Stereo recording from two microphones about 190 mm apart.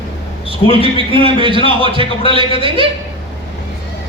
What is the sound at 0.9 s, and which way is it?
A man's voice, 25° right (ahead or behind).